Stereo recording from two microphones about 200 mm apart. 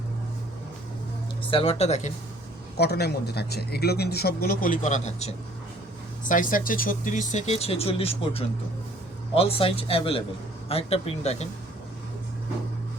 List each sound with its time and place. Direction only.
1.5 s speech: 30° left (ahead or behind)
2.7 s a man's voice: 55° left (ahead or behind); by 11.4 s 30° left (ahead or behind)